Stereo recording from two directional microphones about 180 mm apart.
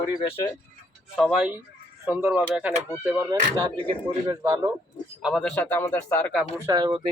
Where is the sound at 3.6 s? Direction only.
25° right (ahead or behind).